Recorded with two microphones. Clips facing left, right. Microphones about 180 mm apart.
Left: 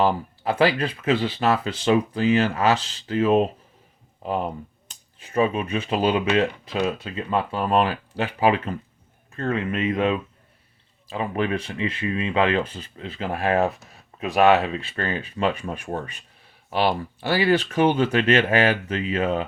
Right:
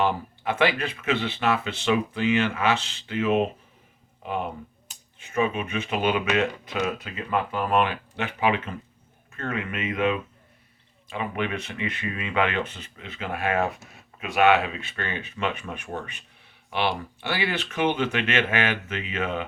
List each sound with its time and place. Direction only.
0.0 s speech: 35° left (ahead or behind)